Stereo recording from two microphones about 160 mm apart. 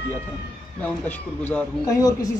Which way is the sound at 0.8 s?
10° left (ahead or behind).